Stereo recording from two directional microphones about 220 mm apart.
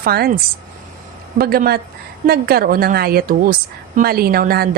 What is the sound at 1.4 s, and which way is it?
A woman's voice, 45° right (ahead or behind).